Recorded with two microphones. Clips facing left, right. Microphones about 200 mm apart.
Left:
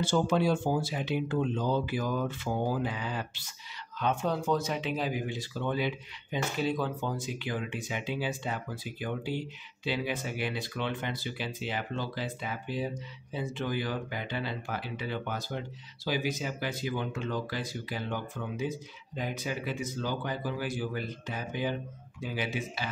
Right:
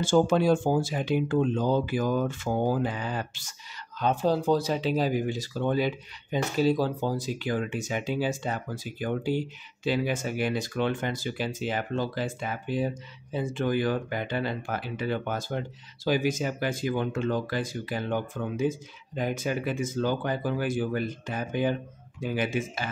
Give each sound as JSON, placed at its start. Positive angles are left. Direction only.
{"t": 0.0, "sound": "speech", "side_deg": -50}
{"t": 4.0, "sound": "speech", "side_deg": -35}